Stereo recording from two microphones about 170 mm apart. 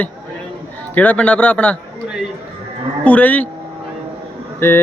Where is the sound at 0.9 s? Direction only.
10° left (ahead or behind).